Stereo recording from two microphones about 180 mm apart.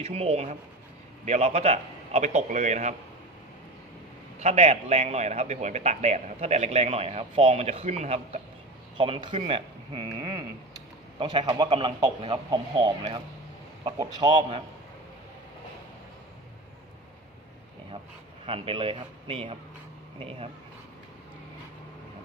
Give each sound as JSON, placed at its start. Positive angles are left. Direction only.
{"t": 0.0, "sound": "a man's voice", "side_deg": -35}
{"t": 4.4, "sound": "a man's voice", "side_deg": -35}
{"t": 18.4, "sound": "a man's voice", "side_deg": -30}